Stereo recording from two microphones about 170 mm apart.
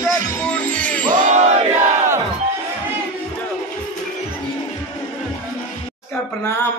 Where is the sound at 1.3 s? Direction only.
45° right (ahead or behind).